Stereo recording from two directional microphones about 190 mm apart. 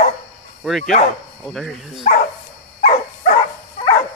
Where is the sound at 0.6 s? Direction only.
Centre (ahead or behind).